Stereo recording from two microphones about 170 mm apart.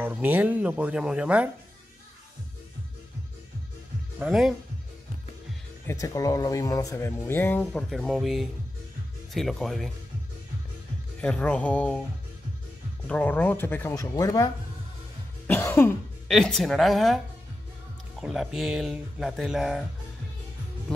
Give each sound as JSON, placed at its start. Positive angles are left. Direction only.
{"t": 0.0, "sound": "speech", "side_deg": -10}
{"t": 4.2, "sound": "speech", "side_deg": 0}
{"t": 5.9, "sound": "speech", "side_deg": 20}
{"t": 7.9, "sound": "speech", "side_deg": 0}
{"t": 11.1, "sound": "speech", "side_deg": 5}
{"t": 13.0, "sound": "speech", "side_deg": 10}
{"t": 15.4, "sound": "cough", "side_deg": 10}
{"t": 16.3, "sound": "speech", "side_deg": 0}
{"t": 18.2, "sound": "speech", "side_deg": 0}